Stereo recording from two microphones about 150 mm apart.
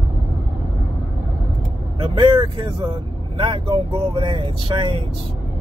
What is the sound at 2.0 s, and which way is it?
Speech, 35° right (ahead or behind).